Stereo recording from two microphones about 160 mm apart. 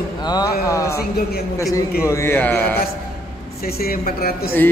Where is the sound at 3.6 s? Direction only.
75° left (ahead or behind).